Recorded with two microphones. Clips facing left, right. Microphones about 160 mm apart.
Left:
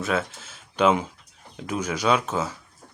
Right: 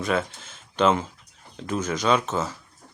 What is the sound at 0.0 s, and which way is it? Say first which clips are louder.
Speech: right 1 dB; 5° left (ahead or behind).